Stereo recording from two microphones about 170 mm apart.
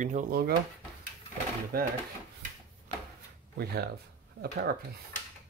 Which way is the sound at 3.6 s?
65° right (ahead or behind).